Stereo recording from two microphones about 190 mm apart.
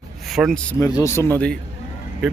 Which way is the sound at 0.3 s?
Centre (ahead or behind).